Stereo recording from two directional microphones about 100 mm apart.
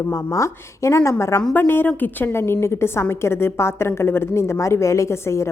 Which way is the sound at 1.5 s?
20° left (ahead or behind).